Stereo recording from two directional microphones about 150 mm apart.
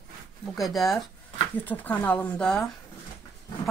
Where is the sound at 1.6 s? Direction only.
10° left (ahead or behind).